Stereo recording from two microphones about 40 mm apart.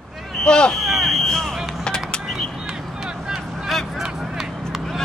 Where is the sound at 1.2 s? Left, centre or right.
Centre.